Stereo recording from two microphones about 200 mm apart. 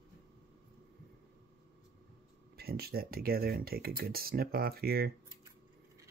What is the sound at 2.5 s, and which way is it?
Speech, 50° right (ahead or behind).